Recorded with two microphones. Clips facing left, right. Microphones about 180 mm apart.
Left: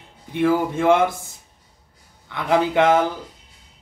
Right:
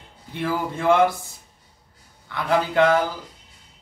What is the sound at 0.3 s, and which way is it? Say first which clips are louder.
Speech: left 7 dB; 20° left (ahead or behind).